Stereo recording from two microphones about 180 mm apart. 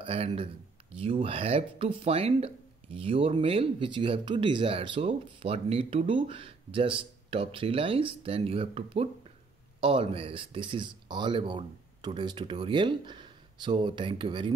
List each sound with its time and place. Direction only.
0.0 s speech: 35° right (ahead or behind)